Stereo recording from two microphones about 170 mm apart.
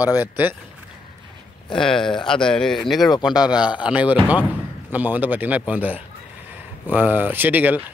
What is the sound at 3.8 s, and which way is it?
Speech, 5° right (ahead or behind).